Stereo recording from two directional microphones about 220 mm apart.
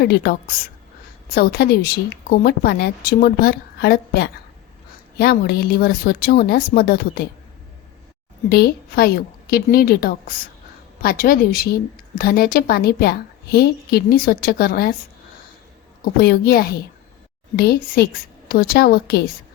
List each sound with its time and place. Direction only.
0.0 s a woman's voice: 45° left (ahead or behind)
8.4 s a woman's voice: 45° left (ahead or behind)
16.1 s a woman's voice: 45° left (ahead or behind)